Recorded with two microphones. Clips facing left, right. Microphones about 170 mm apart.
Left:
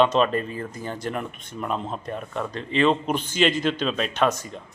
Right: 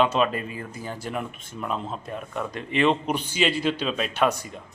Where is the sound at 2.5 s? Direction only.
15° right (ahead or behind).